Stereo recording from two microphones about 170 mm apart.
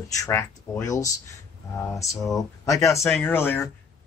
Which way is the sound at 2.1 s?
Centre (ahead or behind).